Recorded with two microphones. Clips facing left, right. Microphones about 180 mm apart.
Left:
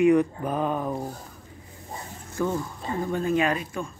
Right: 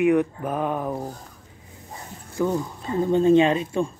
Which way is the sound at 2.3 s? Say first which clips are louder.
Right 3 dB; 15° right (ahead or behind).